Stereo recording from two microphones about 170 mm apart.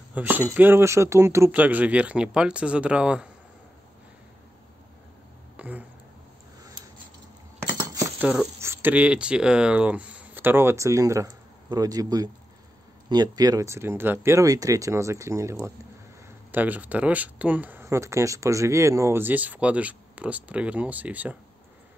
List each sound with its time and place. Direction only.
0.1 s speech: 10° right (ahead or behind)
5.6 s speech: 10° right (ahead or behind)
7.7 s a sound: 20° right (ahead or behind)
8.5 s speech: 15° right (ahead or behind)